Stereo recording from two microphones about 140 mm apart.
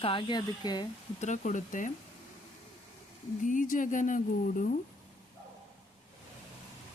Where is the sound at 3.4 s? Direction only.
65° left (ahead or behind).